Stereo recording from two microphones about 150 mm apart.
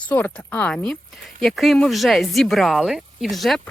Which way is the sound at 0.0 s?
10° left (ahead or behind).